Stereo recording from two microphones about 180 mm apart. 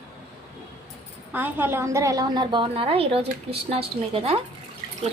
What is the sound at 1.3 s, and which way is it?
A woman's voice, 10° right (ahead or behind).